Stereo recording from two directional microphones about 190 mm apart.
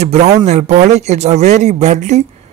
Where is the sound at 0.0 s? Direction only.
35° right (ahead or behind).